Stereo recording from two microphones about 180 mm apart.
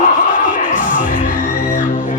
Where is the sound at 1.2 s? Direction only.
45° left (ahead or behind).